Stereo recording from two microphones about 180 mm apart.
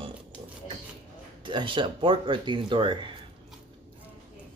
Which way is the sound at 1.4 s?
25° right (ahead or behind).